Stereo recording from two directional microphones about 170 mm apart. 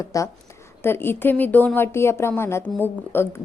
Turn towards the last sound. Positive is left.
turn(degrees=10)  # may be behind; listen again after turning